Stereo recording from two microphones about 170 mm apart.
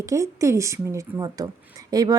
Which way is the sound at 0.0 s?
20° right (ahead or behind).